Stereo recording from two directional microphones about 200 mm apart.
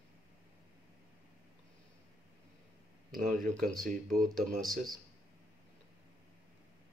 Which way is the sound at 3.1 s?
40° right (ahead or behind).